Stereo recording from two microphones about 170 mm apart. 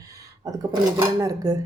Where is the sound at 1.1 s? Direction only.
20° right (ahead or behind).